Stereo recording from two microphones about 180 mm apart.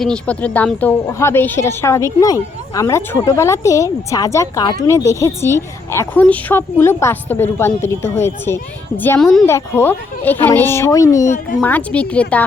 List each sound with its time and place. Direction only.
0.0 s a woman's voice: 5° left (ahead or behind)